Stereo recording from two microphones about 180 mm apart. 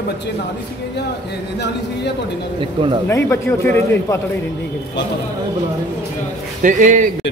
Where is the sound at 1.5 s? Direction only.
70° left (ahead or behind).